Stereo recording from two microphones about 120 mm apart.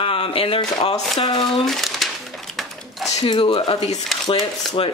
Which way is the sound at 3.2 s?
45° left (ahead or behind).